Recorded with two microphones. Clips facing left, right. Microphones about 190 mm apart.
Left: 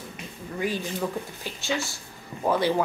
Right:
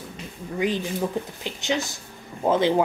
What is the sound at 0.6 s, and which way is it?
Speech, 20° right (ahead or behind).